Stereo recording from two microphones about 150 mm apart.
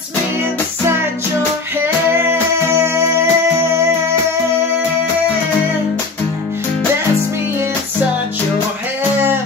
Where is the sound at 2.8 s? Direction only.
15° right (ahead or behind).